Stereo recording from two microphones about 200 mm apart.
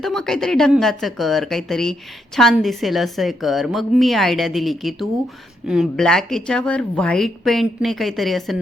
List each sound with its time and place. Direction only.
0.0 s speech: centre (ahead or behind)